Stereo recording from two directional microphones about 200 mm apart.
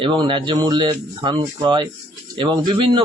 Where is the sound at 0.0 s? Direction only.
25° right (ahead or behind).